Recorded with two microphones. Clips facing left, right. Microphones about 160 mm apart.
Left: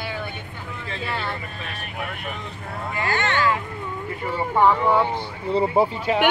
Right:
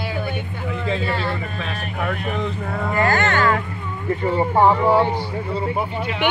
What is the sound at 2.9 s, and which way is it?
Speech, 45° right (ahead or behind).